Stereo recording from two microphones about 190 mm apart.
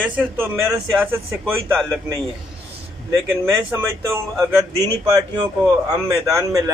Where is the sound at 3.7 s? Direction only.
15° right (ahead or behind).